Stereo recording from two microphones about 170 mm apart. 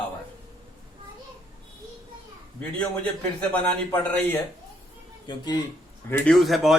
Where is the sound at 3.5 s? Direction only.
10° left (ahead or behind).